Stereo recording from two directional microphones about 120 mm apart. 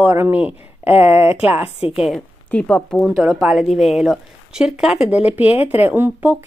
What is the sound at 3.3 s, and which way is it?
A woman's voice, 5° right (ahead or behind).